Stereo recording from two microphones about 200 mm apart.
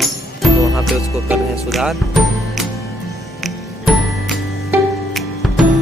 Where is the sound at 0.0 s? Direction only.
Centre (ahead or behind).